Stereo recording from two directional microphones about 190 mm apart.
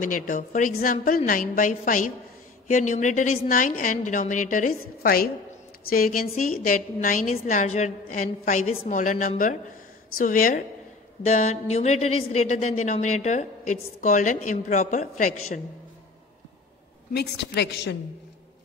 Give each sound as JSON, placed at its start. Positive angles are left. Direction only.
{"t": 0.0, "sound": "a woman's voice", "side_deg": 45}
{"t": 17.1, "sound": "a woman's voice", "side_deg": 60}